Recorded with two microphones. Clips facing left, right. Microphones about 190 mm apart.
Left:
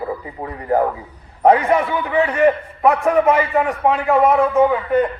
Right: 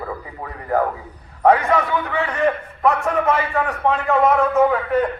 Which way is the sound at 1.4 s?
15° left (ahead or behind).